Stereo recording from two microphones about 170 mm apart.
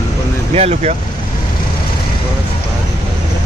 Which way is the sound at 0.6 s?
40° right (ahead or behind).